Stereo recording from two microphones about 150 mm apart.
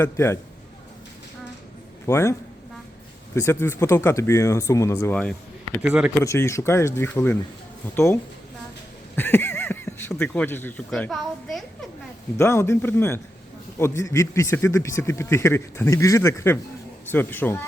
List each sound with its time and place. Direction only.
0.0 s a man's voice: 15° left (ahead or behind)
2.0 s a man's voice: 20° left (ahead or behind)
3.3 s speech: 15° left (ahead or behind)
5.8 s speech: 10° right (ahead or behind)
6.2 s a man's voice: 20° left (ahead or behind); by 11.6 s centre (ahead or behind)
12.4 s a man's voice: 15° left (ahead or behind)